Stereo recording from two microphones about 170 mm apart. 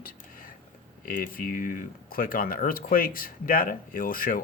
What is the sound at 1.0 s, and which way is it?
Speech, 55° left (ahead or behind).